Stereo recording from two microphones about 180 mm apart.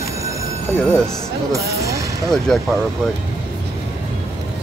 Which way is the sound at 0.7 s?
5° left (ahead or behind).